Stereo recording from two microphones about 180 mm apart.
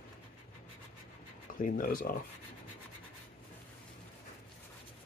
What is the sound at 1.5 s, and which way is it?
Speech, 50° left (ahead or behind).